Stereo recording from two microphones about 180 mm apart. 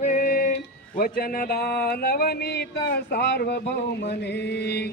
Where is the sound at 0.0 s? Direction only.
50° left (ahead or behind); by 3.6 s 70° left (ahead or behind).